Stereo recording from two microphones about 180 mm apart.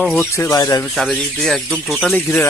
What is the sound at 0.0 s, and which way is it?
Speech, 10° left (ahead or behind).